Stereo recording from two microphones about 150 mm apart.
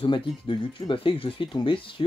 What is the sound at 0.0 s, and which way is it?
Speech, 35° left (ahead or behind).